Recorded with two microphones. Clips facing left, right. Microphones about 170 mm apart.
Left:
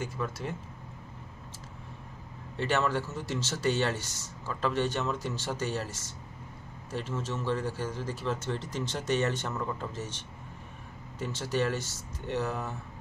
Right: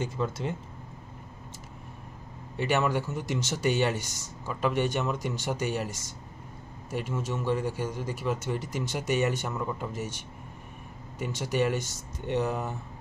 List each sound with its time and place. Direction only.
0.0 s speech: 20° right (ahead or behind)
2.5 s speech: 15° right (ahead or behind)